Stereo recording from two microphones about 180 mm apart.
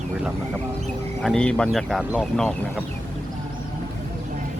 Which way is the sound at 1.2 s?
5° left (ahead or behind).